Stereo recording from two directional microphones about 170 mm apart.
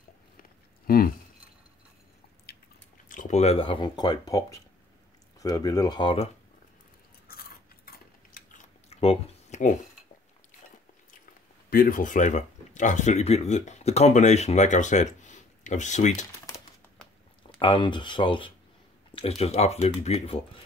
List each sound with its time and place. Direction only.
0.4 s a sound: 60° left (ahead or behind)
2.5 s biting: 65° left (ahead or behind)
3.1 s speech: 45° left (ahead or behind)
7.2 s biting: 60° left (ahead or behind)
8.8 s a sound: 35° left (ahead or behind)
11.7 s speech: 55° left (ahead or behind)
17.6 s speech: 30° left (ahead or behind)